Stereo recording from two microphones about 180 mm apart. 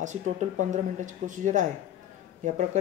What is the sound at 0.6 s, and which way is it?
Speech, 45° right (ahead or behind).